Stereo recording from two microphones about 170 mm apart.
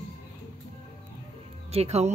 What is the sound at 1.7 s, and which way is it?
Speech, 40° right (ahead or behind).